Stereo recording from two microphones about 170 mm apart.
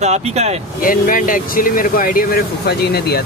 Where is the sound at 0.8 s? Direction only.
55° left (ahead or behind).